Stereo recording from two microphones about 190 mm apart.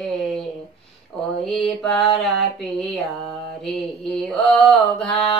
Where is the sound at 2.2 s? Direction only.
Centre (ahead or behind).